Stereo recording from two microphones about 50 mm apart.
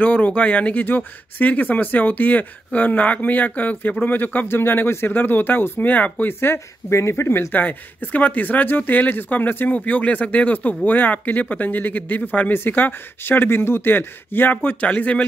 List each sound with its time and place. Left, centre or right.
0.0 s speech: left
6.2 s speech: left
7.0 s speech: left
7.5 s speech: left